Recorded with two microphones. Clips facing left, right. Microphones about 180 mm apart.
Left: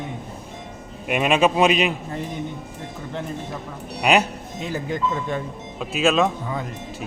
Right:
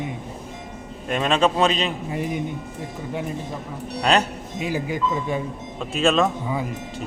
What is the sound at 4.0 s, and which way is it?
Speech, 10° left (ahead or behind).